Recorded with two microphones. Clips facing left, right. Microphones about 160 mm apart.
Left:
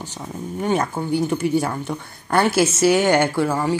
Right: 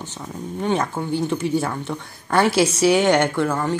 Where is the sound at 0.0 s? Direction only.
10° left (ahead or behind).